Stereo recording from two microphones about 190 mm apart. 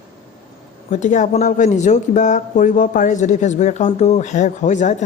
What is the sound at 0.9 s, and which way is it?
Speech, 40° left (ahead or behind).